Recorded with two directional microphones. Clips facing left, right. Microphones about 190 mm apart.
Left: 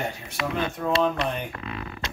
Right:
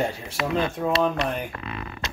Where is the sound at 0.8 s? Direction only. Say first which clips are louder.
Left 2 dB; 10° right (ahead or behind).